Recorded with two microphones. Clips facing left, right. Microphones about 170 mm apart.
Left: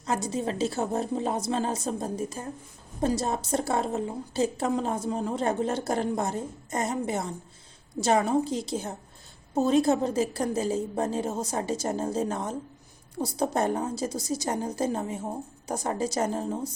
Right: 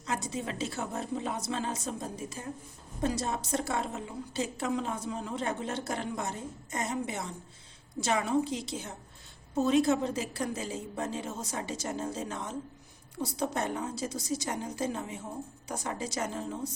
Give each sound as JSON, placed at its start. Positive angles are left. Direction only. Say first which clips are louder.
{"t": 0.0, "sound": "a woman's voice", "louder": "left 6 dB", "side_deg": 35}